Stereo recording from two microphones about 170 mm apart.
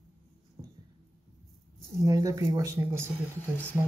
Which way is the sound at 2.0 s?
20° right (ahead or behind).